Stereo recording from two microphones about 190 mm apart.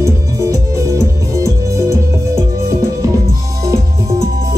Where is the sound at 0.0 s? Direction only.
15° right (ahead or behind).